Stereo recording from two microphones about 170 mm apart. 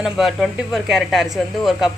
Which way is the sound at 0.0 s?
Centre (ahead or behind).